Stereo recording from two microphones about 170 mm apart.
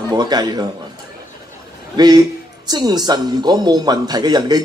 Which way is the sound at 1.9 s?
25° right (ahead or behind).